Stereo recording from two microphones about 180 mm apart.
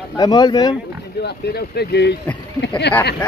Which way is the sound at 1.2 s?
65° left (ahead or behind).